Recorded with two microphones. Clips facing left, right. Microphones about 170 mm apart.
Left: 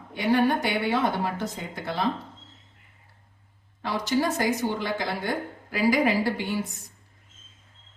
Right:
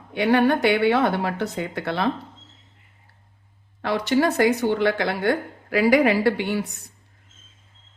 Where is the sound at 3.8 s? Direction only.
65° right (ahead or behind).